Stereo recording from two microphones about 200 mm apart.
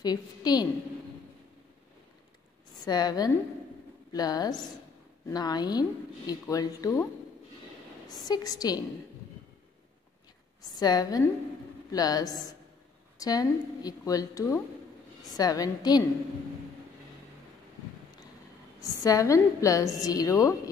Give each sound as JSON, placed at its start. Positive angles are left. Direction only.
{"t": 0.0, "sound": "a woman's voice", "side_deg": 20}
{"t": 2.8, "sound": "a woman's voice", "side_deg": 20}
{"t": 8.1, "sound": "a woman's voice", "side_deg": 20}
{"t": 10.6, "sound": "a woman's voice", "side_deg": 20}
{"t": 18.8, "sound": "a woman's voice", "side_deg": 15}